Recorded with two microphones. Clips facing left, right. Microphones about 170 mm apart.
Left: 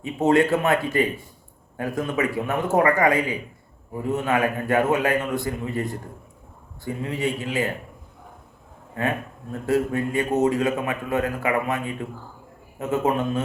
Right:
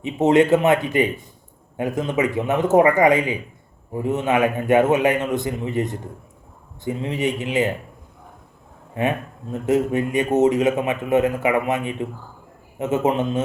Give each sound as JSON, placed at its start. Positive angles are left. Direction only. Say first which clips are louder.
{"t": 0.0, "sound": "a man's voice", "louder": "right 3 dB", "side_deg": -20}
{"t": 9.0, "sound": "a man's voice", "louder": "right 3 dB", "side_deg": -20}